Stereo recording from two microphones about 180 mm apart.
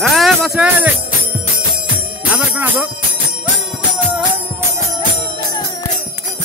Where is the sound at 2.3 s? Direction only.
10° right (ahead or behind).